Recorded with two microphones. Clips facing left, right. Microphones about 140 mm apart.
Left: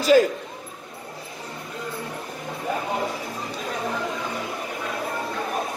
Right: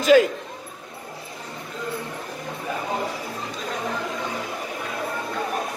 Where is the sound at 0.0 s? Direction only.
40° left (ahead or behind).